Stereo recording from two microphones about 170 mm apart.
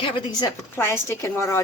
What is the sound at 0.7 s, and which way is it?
Speech, 15° left (ahead or behind).